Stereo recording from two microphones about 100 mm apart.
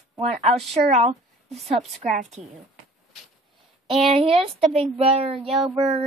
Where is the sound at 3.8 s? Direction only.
75° right (ahead or behind).